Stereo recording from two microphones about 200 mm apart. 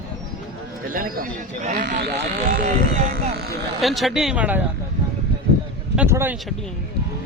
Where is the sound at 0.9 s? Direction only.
45° right (ahead or behind).